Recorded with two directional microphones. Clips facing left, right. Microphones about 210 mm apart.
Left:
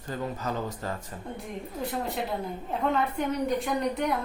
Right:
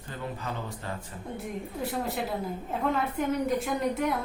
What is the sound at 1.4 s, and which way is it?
A woman's voice, centre (ahead or behind).